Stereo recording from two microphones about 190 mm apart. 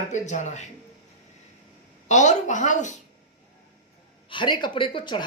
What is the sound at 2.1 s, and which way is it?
Speech, 40° left (ahead or behind).